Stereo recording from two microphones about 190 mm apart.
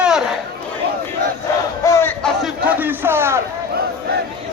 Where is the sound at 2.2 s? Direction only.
5° right (ahead or behind).